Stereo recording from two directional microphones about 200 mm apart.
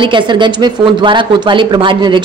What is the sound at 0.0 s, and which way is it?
Speech, 25° right (ahead or behind).